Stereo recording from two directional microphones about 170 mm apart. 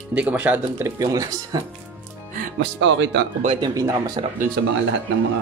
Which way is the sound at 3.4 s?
35° right (ahead or behind).